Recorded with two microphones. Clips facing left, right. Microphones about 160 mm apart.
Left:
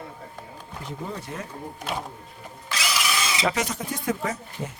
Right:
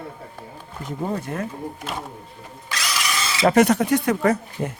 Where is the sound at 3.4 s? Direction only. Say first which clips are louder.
Right 14 dB; 60° right (ahead or behind).